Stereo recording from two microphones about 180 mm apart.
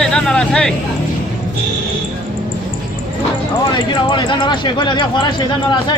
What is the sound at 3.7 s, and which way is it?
Speech, 25° left (ahead or behind).